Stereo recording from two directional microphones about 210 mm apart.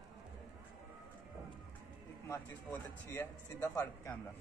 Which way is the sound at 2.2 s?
10° left (ahead or behind).